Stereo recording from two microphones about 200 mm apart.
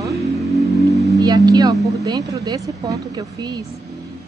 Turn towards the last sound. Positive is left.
turn(degrees=-15)  # may be behind; listen again after turning